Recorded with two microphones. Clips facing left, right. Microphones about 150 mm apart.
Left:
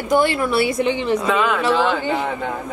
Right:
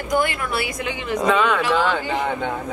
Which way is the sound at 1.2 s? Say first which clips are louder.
Even; centre (ahead or behind).